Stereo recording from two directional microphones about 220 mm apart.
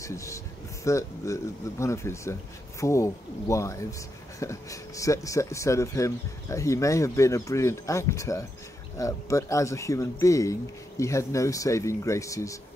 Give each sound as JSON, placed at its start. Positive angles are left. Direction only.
{"t": 0.0, "sound": "speech", "side_deg": 15}